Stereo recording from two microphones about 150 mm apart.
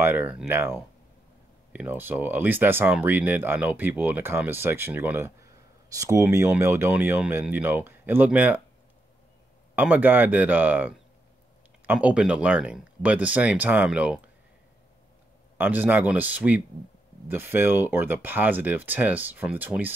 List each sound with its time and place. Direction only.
0.0 s speech: 15° right (ahead or behind)
9.8 s speech: 10° right (ahead or behind)
15.5 s speech: 15° right (ahead or behind)